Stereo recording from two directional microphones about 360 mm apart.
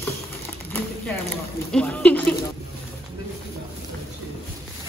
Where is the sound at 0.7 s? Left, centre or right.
Centre.